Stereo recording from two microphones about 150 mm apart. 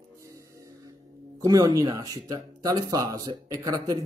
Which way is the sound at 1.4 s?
25° right (ahead or behind).